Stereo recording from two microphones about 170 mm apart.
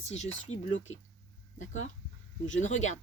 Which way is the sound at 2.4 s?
45° left (ahead or behind).